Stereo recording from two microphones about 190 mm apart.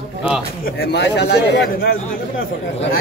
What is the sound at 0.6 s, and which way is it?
A man's voice, 55° left (ahead or behind).